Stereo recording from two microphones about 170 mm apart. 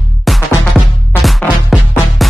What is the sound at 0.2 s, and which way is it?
Music, centre (ahead or behind).